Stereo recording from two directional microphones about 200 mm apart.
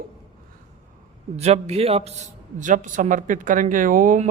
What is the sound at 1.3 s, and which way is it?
Speech, 30° right (ahead or behind).